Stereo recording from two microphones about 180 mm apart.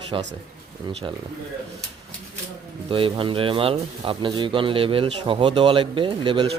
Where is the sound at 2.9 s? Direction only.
30° right (ahead or behind).